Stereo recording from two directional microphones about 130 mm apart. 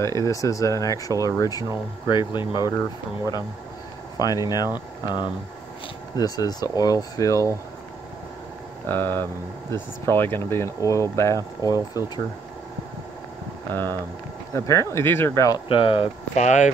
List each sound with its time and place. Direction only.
0.0 s speech: 25° left (ahead or behind)
4.2 s speech: 30° left (ahead or behind)
8.8 s speech: 15° left (ahead or behind)
13.7 s speech: 15° left (ahead or behind)
15.7 s speech: 45° left (ahead or behind)
16.3 s speech: 65° left (ahead or behind)